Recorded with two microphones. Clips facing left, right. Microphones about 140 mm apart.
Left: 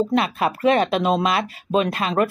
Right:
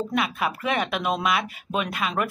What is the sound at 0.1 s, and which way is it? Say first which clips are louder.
A woman's voice: left 5 dB; 35° left (ahead or behind).